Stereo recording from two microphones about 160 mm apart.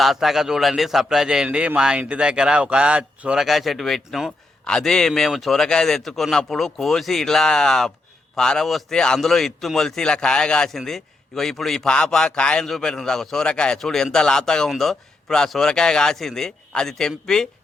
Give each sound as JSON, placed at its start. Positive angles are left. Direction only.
{"t": 0.0, "sound": "a man's voice", "side_deg": 0}